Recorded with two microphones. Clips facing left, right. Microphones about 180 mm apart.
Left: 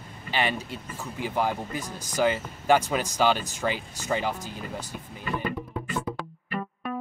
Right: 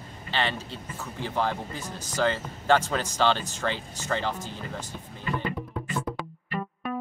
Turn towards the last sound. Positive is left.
turn(degrees=0)  # may be behind; listen again after turning